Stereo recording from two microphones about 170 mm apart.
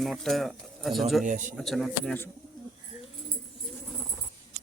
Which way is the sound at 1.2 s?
50° right (ahead or behind).